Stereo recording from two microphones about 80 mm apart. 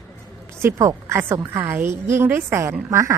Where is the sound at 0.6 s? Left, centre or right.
Right.